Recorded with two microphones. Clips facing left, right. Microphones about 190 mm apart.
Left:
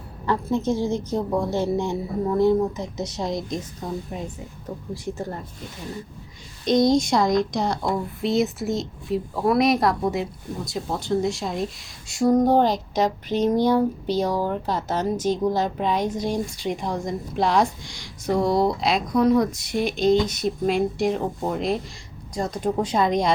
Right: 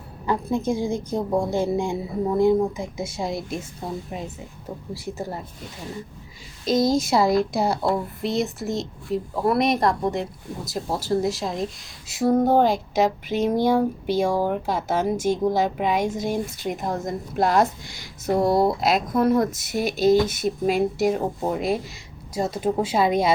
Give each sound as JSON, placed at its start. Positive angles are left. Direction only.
{"t": 0.3, "sound": "a woman's voice", "side_deg": -15}
{"t": 5.0, "sound": "a woman's voice", "side_deg": -10}
{"t": 6.7, "sound": "a woman's voice", "side_deg": -5}
{"t": 18.3, "sound": "speech", "side_deg": -25}
{"t": 18.5, "sound": "a woman's voice", "side_deg": 0}